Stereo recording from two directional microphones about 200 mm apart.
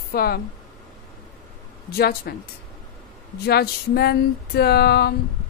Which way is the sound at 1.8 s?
50° left (ahead or behind).